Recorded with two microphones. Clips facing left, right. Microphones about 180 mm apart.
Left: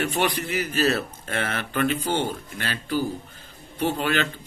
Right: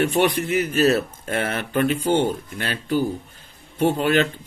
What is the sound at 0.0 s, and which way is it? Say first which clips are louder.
Speech: right 5 dB; 50° right (ahead or behind).